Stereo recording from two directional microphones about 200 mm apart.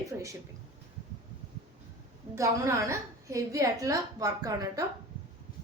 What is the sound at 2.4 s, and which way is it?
A woman's voice, 15° right (ahead or behind).